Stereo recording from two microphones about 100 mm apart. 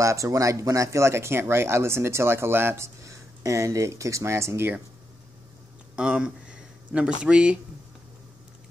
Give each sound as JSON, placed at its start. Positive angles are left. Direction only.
{"t": 0.0, "sound": "speech", "side_deg": -30}
{"t": 5.9, "sound": "a sound", "side_deg": -10}
{"t": 7.2, "sound": "speech", "side_deg": -10}